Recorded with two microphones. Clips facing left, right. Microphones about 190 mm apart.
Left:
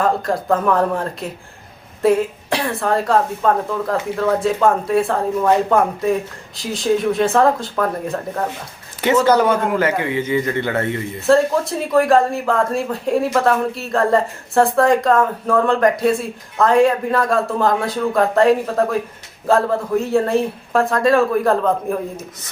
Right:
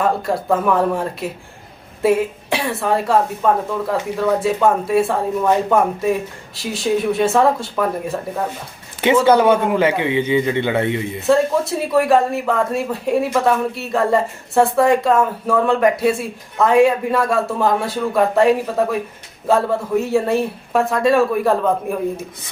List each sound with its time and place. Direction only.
0.0 s speech: 5° right (ahead or behind)
9.3 s a man's voice: 20° right (ahead or behind)
11.3 s speech: 5° right (ahead or behind)